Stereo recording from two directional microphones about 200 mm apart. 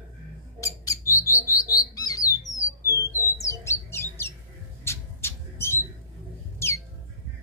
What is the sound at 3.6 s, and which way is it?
Bird, 15° left (ahead or behind).